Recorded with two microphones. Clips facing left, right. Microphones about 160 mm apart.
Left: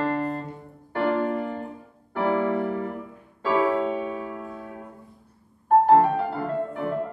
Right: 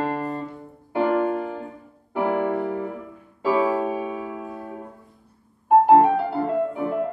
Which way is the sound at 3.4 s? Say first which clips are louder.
Right 1 dB; 10° right (ahead or behind).